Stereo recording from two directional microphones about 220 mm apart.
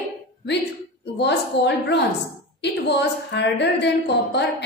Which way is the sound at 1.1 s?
50° left (ahead or behind).